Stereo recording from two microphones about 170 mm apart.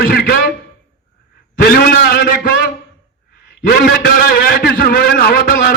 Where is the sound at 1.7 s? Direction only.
65° left (ahead or behind).